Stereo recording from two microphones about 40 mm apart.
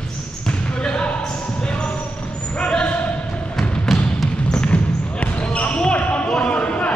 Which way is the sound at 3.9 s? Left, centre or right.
Centre.